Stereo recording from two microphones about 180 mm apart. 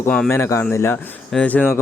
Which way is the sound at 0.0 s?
10° left (ahead or behind).